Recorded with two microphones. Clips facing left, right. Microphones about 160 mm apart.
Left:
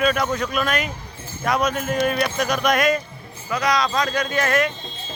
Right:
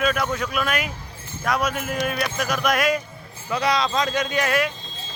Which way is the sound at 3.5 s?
30° right (ahead or behind).